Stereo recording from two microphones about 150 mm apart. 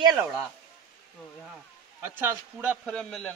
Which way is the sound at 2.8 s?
Centre (ahead or behind).